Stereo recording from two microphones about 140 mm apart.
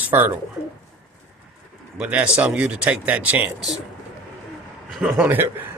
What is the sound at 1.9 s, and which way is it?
A man's voice, 10° right (ahead or behind).